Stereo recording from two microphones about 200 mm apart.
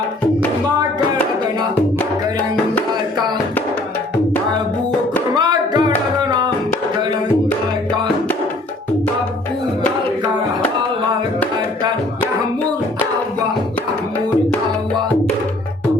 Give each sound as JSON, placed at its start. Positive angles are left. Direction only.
{"t": 5.4, "sound": "music", "side_deg": -20}